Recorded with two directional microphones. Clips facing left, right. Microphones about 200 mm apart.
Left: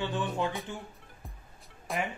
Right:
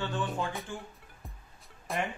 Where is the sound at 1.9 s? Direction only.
Centre (ahead or behind).